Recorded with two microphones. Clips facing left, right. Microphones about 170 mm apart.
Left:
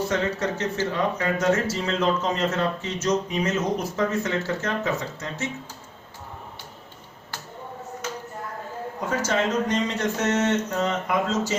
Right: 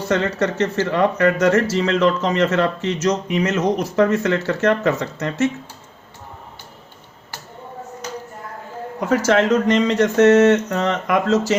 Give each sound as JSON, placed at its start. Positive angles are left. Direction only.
{"t": 0.1, "sound": "a man's voice", "side_deg": -80}
{"t": 9.0, "sound": "a man's voice", "side_deg": -90}